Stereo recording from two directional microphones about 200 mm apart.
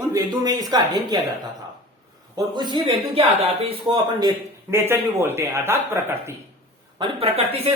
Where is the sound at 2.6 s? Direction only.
20° right (ahead or behind).